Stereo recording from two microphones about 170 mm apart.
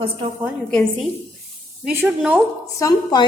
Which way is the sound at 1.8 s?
10° right (ahead or behind).